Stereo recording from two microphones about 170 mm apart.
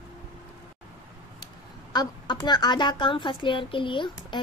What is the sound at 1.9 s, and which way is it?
A woman's voice, 25° left (ahead or behind).